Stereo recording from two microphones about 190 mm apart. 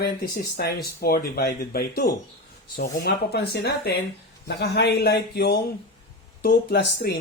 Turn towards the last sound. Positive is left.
turn(degrees=60)  # may be behind; listen again after turning